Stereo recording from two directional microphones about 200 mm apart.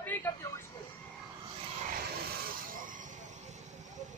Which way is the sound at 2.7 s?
40° right (ahead or behind).